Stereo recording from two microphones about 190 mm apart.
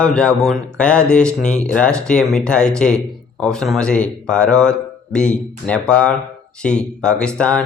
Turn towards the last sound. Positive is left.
turn(degrees=5)  # may be behind; listen again after turning